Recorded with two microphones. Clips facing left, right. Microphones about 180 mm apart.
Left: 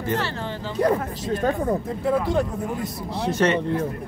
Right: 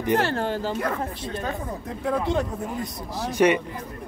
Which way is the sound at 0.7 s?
40° left (ahead or behind).